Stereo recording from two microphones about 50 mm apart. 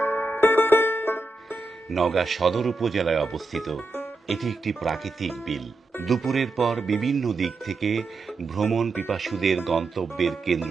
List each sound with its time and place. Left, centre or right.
0.0 s music: left
1.9 s speech: centre